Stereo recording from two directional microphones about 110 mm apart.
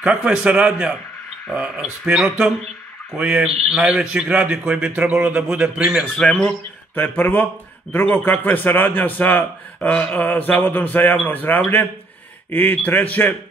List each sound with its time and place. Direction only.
0.0 s speech: 10° right (ahead or behind)
6.1 s speech: 5° left (ahead or behind)
7.0 s a man's voice: 15° left (ahead or behind)
12.4 s a man's voice: 15° left (ahead or behind)